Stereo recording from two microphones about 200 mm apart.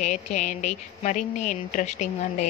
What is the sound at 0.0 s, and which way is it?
A woman's voice, 35° left (ahead or behind).